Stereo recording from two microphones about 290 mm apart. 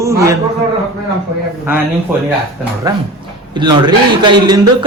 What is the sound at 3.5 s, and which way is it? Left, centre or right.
Speech, centre.